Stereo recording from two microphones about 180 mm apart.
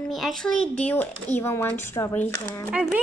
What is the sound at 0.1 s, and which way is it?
Speech, centre (ahead or behind).